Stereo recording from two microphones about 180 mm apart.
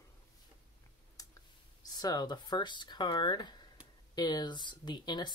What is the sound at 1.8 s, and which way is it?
Speech, 20° left (ahead or behind).